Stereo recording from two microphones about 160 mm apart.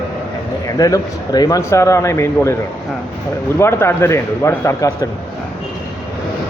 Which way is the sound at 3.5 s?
15° left (ahead or behind).